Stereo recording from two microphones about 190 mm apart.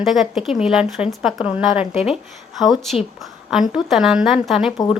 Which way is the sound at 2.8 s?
Centre (ahead or behind).